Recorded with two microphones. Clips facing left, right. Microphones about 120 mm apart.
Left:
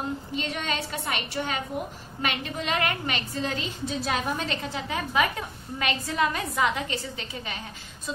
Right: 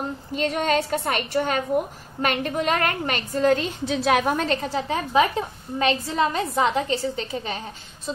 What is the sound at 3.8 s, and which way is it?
A woman's voice, 75° right (ahead or behind).